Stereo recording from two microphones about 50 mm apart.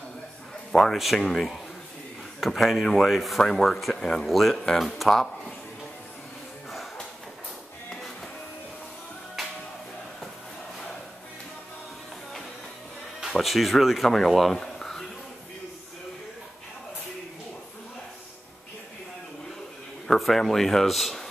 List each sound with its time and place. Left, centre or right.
0.7 s speech: centre
13.3 s speech: centre
20.1 s speech: centre